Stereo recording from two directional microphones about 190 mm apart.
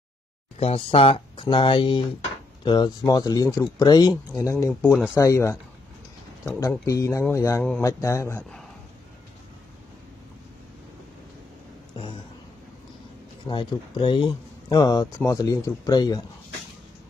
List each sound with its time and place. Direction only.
0.6 s speech: 30° left (ahead or behind)
6.9 s speech: 15° left (ahead or behind)
11.9 s speech: 25° left (ahead or behind)
13.5 s speech: 25° left (ahead or behind)